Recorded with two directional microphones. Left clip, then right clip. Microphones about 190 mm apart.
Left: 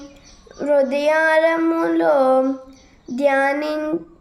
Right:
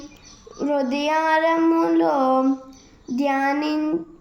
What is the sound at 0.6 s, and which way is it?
Child singing, 25° left (ahead or behind).